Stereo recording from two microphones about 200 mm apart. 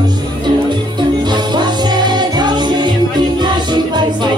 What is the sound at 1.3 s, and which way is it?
Music, 20° right (ahead or behind).